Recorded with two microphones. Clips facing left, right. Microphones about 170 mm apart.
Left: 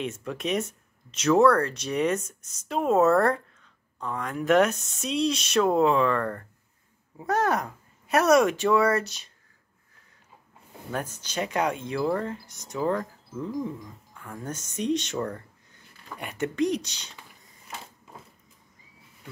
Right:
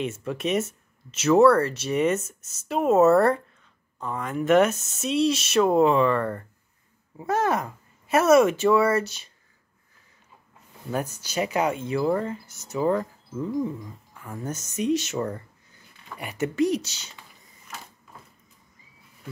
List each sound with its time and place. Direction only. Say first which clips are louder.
0.0 s speech: right 3 dB; centre (ahead or behind)
11.1 s speech: right 1 dB; 5° right (ahead or behind)